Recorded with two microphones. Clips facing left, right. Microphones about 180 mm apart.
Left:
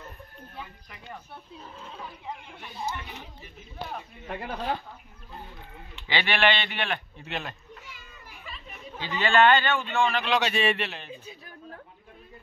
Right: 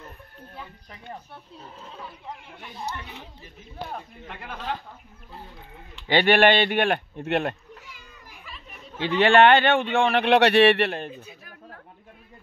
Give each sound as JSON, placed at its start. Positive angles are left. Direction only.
{"t": 4.3, "sound": "speech", "side_deg": 40}
{"t": 6.0, "sound": "speech", "side_deg": -50}
{"t": 9.2, "sound": "a man's voice", "side_deg": -60}